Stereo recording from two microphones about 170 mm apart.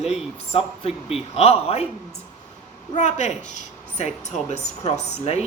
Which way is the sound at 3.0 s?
45° left (ahead or behind).